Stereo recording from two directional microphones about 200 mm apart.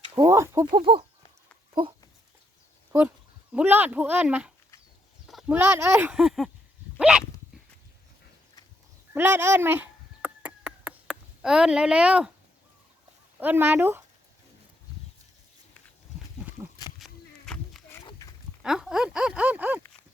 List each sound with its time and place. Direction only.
0.0 s speech: 15° right (ahead or behind)
3.5 s speech: 5° right (ahead or behind)
7.0 s dog: 5° right (ahead or behind)
9.1 s a sound: 10° right (ahead or behind)
13.4 s speech: 10° right (ahead or behind)
17.0 s walk: centre (ahead or behind)
18.0 s pig: 15° left (ahead or behind)
18.6 s speech: 5° right (ahead or behind)